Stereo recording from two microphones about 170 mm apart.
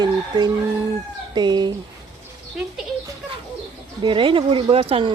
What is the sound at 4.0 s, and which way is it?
Speech, 30° right (ahead or behind).